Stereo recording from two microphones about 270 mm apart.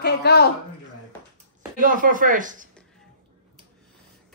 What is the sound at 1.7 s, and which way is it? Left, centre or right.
Speech, right.